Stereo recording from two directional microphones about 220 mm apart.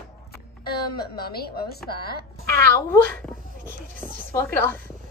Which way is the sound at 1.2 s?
45° left (ahead or behind).